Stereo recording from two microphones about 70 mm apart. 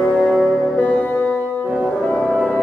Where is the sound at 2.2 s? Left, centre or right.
Centre.